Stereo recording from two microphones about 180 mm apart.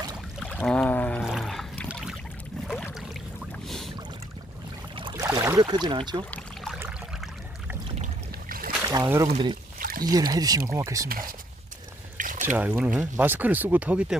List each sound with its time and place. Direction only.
0.4 s a sound: 5° left (ahead or behind)
1.9 s boat: 5° right (ahead or behind)
4.9 s a sound: 25° right (ahead or behind)
5.2 s boat: 15° right (ahead or behind)
5.6 s speech: 25° right (ahead or behind)
7.9 s boat: 35° right (ahead or behind)
8.4 s boat: 55° right (ahead or behind)
8.9 s speech: 15° right (ahead or behind)
9.3 s speech: 25° right (ahead or behind)
9.7 s a sound: 50° right (ahead or behind)
10.0 s speech: 20° right (ahead or behind)
11.1 s speech: 50° right (ahead or behind)
12.1 s a sound: 45° right (ahead or behind)
12.5 s speech: 10° right (ahead or behind)